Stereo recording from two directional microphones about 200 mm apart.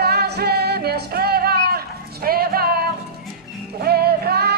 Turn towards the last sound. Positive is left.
turn(degrees=-55)  # may be behind; listen again after turning